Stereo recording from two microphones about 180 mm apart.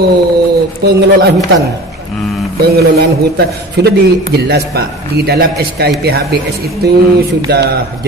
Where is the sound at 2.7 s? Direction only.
65° right (ahead or behind).